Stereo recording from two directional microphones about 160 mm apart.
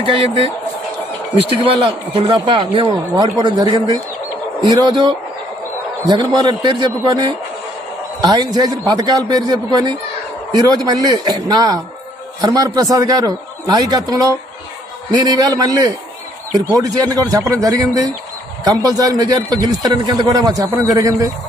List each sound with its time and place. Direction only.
0.0 s speech: 35° right (ahead or behind)
2.1 s a man's voice: 30° right (ahead or behind)